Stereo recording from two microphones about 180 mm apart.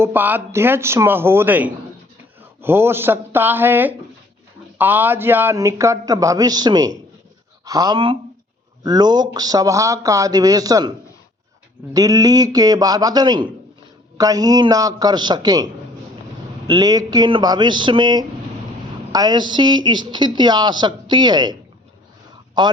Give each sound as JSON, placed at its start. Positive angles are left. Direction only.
{"t": 0.0, "sound": "a man's voice", "side_deg": -10}
{"t": 11.9, "sound": "speech", "side_deg": -20}
{"t": 16.6, "sound": "speech", "side_deg": -20}
{"t": 22.6, "sound": "speech", "side_deg": -25}